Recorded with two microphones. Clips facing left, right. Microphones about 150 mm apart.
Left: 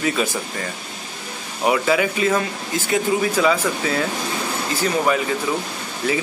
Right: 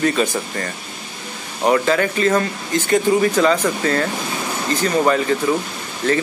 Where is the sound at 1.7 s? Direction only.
5° left (ahead or behind).